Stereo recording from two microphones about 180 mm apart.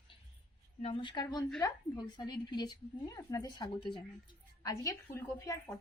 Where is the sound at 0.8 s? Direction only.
30° left (ahead or behind).